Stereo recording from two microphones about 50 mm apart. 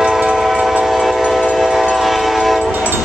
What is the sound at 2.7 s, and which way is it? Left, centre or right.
Train, right.